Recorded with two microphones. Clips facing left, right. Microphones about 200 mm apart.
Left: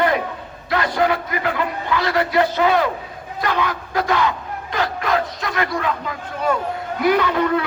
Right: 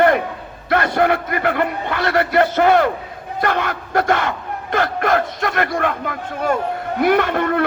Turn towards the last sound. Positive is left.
turn(degrees=-55)  # may be behind; listen again after turning